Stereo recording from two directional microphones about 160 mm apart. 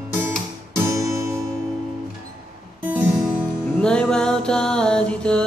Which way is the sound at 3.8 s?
5° left (ahead or behind).